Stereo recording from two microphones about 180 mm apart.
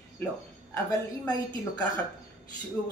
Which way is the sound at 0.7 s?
20° left (ahead or behind).